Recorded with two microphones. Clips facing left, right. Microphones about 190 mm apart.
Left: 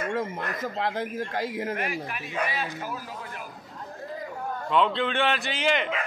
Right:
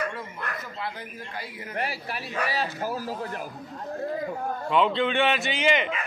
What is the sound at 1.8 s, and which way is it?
Speech, 35° right (ahead or behind).